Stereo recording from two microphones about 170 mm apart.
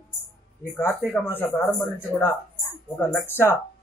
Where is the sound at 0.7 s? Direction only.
15° left (ahead or behind).